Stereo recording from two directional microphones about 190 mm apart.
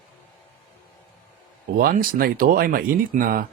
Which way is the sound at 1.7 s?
50° right (ahead or behind).